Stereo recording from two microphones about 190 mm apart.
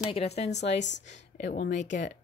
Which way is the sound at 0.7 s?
70° left (ahead or behind).